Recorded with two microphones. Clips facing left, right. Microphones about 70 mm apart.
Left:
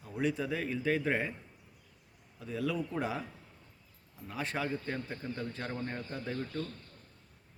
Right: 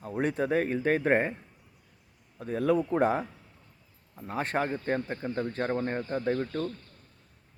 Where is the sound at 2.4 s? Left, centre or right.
Right.